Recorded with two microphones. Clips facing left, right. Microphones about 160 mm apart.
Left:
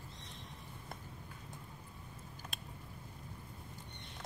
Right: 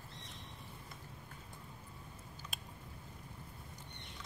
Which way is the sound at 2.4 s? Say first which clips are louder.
Left 1 dB; 50° left (ahead or behind).